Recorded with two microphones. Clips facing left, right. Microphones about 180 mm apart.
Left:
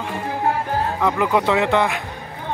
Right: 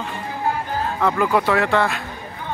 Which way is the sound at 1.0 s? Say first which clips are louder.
Right 1 dB; 15° left (ahead or behind).